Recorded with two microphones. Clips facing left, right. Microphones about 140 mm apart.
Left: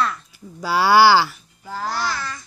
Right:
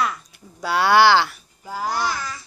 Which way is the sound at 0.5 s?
5° left (ahead or behind).